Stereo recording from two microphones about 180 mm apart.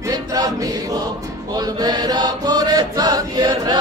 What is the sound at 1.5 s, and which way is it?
Chant, 20° right (ahead or behind).